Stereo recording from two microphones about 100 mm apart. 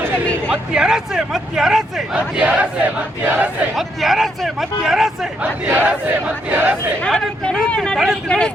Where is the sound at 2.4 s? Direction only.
15° right (ahead or behind).